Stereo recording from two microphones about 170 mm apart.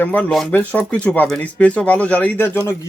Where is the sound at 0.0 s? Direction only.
10° left (ahead or behind).